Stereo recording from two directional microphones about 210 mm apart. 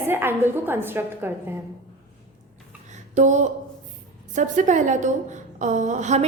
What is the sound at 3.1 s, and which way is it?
A woman's voice, 35° right (ahead or behind).